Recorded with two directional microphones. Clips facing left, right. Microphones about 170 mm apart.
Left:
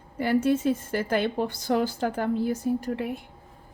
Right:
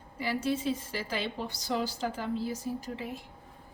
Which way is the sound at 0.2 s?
55° left (ahead or behind).